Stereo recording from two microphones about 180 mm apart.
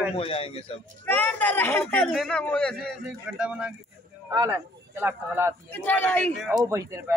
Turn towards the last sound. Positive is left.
turn(degrees=-15)  # may be behind; listen again after turning